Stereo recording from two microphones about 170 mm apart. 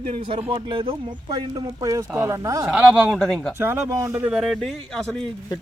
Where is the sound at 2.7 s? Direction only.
5° right (ahead or behind).